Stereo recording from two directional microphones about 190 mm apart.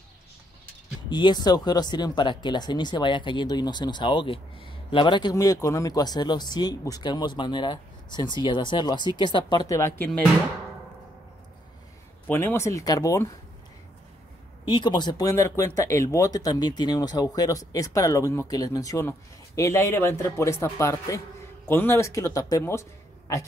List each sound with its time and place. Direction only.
1.1 s speech: 20° left (ahead or behind)
12.3 s speech: 10° left (ahead or behind)
14.6 s speech: 25° left (ahead or behind)